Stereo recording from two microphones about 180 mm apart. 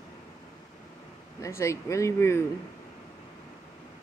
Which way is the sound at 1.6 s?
15° left (ahead or behind).